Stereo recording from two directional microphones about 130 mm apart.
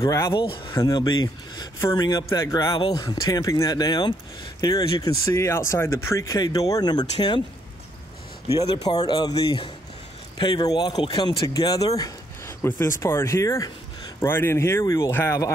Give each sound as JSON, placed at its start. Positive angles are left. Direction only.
{"t": 0.0, "sound": "speech", "side_deg": 25}
{"t": 2.7, "sound": "speech", "side_deg": 40}
{"t": 3.0, "sound": "speech", "side_deg": 30}
{"t": 8.5, "sound": "speech", "side_deg": 30}